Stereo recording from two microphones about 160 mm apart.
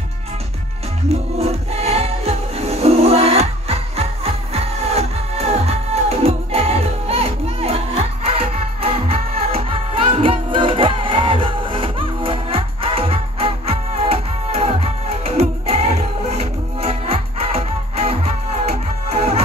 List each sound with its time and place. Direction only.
1.0 s music: 40° right (ahead or behind)